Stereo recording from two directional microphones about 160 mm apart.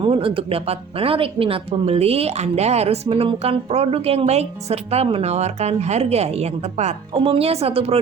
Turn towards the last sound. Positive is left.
turn(degrees=-35)  # may be behind; listen again after turning